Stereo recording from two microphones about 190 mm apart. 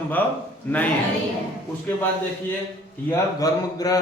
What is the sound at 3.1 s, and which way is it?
Speech, 20° left (ahead or behind).